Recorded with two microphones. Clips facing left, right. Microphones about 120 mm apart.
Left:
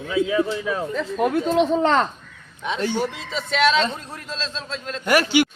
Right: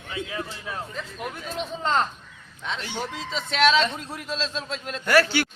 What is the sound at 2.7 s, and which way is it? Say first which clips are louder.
Speech: left 12 dB; 45° left (ahead or behind).